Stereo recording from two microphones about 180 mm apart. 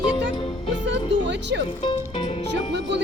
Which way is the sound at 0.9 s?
75° right (ahead or behind).